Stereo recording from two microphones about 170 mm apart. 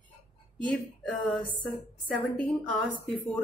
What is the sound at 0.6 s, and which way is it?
Speech, 10° left (ahead or behind).